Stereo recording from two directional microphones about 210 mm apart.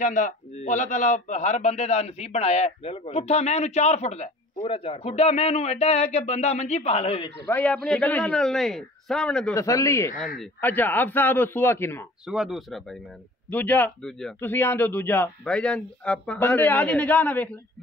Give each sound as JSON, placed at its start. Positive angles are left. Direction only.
{"t": 0.0, "sound": "a man's voice", "side_deg": 35}
{"t": 7.4, "sound": "a man's voice", "side_deg": 5}
{"t": 9.6, "sound": "a man's voice", "side_deg": 15}
{"t": 12.3, "sound": "a man's voice", "side_deg": 0}